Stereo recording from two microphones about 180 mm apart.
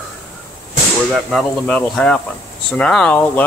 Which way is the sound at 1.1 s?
5° left (ahead or behind).